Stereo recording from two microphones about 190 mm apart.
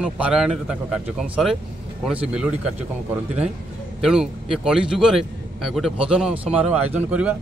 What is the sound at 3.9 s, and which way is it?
A man's voice, 5° right (ahead or behind).